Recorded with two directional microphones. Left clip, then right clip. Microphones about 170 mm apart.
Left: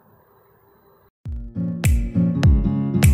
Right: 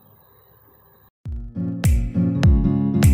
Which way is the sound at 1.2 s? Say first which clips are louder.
Even; centre (ahead or behind).